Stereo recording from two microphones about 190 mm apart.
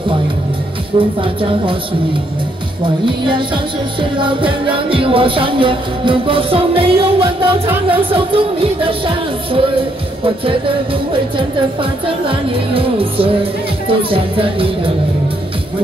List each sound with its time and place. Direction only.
0.9 s music: 25° right (ahead or behind)
2.8 s music: 25° right (ahead or behind)
11.3 s music: 25° right (ahead or behind)